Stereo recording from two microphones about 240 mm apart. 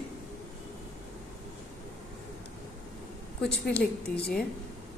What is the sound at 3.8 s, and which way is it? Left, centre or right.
Speech, left.